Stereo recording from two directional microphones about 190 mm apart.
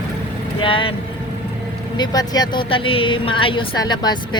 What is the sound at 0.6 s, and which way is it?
Speech, 25° left (ahead or behind).